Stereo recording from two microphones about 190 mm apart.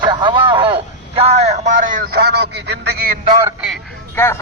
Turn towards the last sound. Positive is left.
turn(degrees=15)  # may be behind; listen again after turning